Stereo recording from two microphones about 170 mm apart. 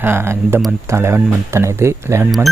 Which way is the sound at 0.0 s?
15° right (ahead or behind).